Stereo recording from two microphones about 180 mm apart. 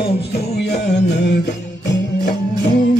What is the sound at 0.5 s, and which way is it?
Music, 70° left (ahead or behind).